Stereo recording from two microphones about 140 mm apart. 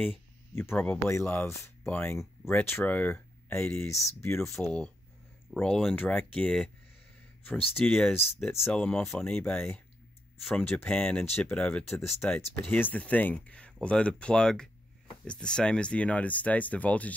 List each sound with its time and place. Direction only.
0.6 s speech: 15° left (ahead or behind)
4.5 s speech: 5° left (ahead or behind)
10.8 s speech: 10° left (ahead or behind)
12.2 s speech: 20° left (ahead or behind)